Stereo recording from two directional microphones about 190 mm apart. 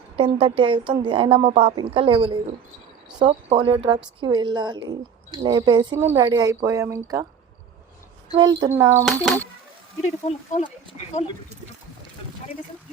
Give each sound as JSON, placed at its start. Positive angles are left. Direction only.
{"t": 0.2, "sound": "a woman's voice", "side_deg": -30}
{"t": 6.0, "sound": "a woman's voice", "side_deg": -10}
{"t": 8.3, "sound": "a woman's voice", "side_deg": -20}
{"t": 9.0, "sound": "a child's voice", "side_deg": 0}
{"t": 10.0, "sound": "speech", "side_deg": 35}